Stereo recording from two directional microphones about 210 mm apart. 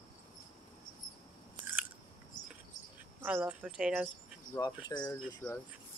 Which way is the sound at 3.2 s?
10° right (ahead or behind).